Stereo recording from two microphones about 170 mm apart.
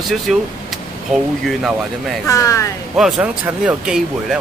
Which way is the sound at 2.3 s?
20° left (ahead or behind).